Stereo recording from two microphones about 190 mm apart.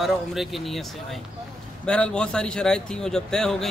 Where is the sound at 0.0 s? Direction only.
Centre (ahead or behind).